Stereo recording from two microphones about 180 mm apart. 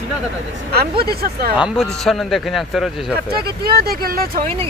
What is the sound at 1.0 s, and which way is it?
Speech, 60° right (ahead or behind).